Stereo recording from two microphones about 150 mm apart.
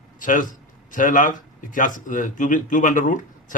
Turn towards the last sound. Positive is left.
turn(degrees=60)  # may be behind; listen again after turning